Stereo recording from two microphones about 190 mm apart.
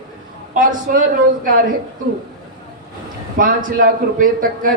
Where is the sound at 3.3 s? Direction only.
45° right (ahead or behind).